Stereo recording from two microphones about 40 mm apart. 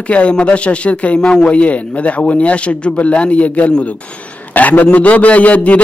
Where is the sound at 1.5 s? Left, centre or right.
Left.